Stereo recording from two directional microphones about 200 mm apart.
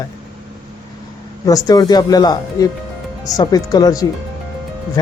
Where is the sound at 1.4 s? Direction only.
20° left (ahead or behind).